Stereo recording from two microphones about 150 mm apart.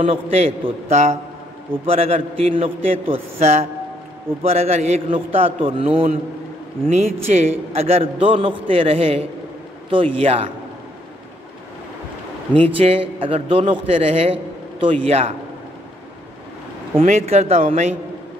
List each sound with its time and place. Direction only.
0.0 s a man's voice: 40° right (ahead or behind)
12.7 s a man's voice: 40° right (ahead or behind)
17.3 s speech: 45° right (ahead or behind)